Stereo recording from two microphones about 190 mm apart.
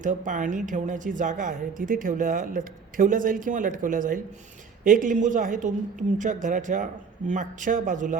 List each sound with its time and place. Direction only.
0.0 s speech: 40° right (ahead or behind)